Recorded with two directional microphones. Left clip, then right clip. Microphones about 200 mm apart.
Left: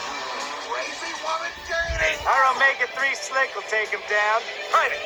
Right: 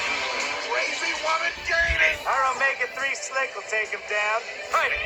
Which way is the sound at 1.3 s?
20° left (ahead or behind).